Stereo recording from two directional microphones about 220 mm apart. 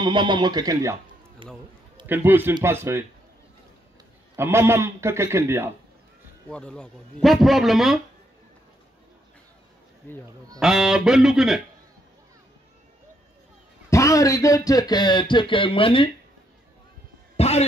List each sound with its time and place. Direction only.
0.0 s speech: 20° right (ahead or behind)
2.0 s a man's voice: 10° right (ahead or behind)
4.4 s a man's voice: 10° right (ahead or behind)
6.5 s a man's voice: 5° left (ahead or behind)
10.0 s speech: 10° left (ahead or behind)
10.6 s a man's voice: centre (ahead or behind)
13.8 s speech: 15° left (ahead or behind)
17.4 s music: 30° left (ahead or behind)